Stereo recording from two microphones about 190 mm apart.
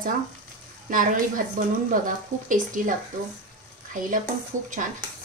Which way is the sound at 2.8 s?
45° right (ahead or behind).